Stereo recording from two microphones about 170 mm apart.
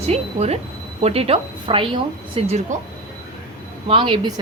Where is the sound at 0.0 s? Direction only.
40° right (ahead or behind).